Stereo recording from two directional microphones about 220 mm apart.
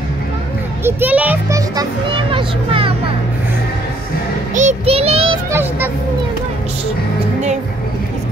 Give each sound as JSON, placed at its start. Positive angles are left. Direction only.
{"t": 0.8, "sound": "a child's voice", "side_deg": -5}
{"t": 4.6, "sound": "child singing", "side_deg": -30}
{"t": 5.5, "sound": "a child's voice", "side_deg": -10}